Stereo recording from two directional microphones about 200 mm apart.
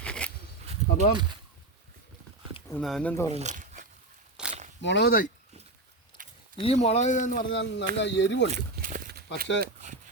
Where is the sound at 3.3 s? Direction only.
35° right (ahead or behind).